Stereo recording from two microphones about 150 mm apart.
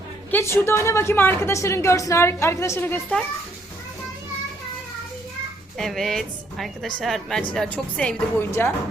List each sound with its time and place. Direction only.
0.3 s a woman's voice: 15° left (ahead or behind)
5.7 s a woman's voice: centre (ahead or behind)